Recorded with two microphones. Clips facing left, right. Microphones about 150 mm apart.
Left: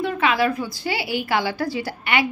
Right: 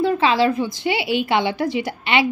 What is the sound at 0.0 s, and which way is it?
A woman's voice, 30° right (ahead or behind).